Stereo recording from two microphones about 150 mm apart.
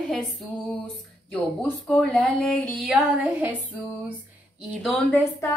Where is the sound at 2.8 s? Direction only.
10° right (ahead or behind).